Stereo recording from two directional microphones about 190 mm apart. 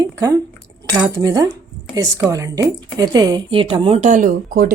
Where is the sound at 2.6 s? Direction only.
20° right (ahead or behind); by 4.7 s 45° right (ahead or behind).